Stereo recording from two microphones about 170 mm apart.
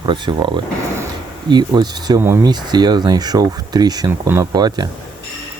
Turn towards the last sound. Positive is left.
turn(degrees=-25)  # may be behind; listen again after turning